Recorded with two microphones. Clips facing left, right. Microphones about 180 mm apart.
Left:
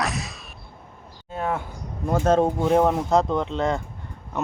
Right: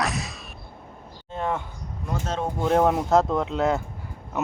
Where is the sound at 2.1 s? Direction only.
50° left (ahead or behind).